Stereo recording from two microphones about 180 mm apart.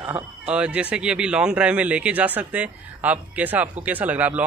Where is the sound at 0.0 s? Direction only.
5° right (ahead or behind).